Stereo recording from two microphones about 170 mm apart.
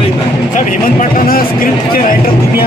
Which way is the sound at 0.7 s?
55° left (ahead or behind).